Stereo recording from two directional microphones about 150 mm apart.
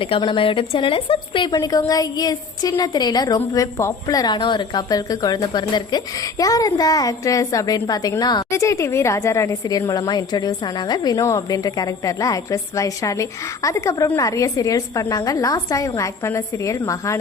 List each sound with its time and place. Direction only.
0.0 s a woman's voice: 35° left (ahead or behind)
1.5 s a woman's voice: 25° left (ahead or behind)